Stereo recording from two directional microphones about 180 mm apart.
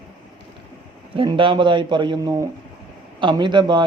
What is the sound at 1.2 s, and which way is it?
A man's voice, 30° right (ahead or behind).